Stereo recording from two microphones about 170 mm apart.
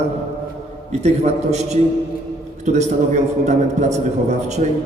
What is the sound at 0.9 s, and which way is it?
A man's voice, 40° right (ahead or behind).